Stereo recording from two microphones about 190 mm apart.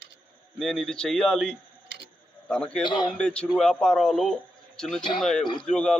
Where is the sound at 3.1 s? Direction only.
5° left (ahead or behind).